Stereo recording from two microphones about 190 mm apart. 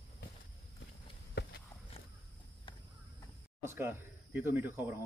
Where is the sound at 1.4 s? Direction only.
65° left (ahead or behind).